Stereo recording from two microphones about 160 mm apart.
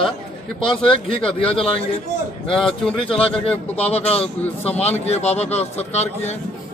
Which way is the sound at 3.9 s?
40° left (ahead or behind).